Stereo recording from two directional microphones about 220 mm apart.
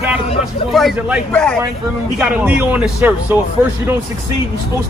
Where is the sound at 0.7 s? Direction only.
Centre (ahead or behind).